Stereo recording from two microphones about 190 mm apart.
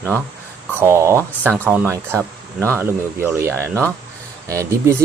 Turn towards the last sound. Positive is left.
turn(degrees=-15)  # may be behind; listen again after turning